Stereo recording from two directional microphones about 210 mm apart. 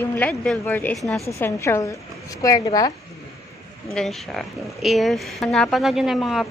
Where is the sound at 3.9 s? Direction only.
Centre (ahead or behind).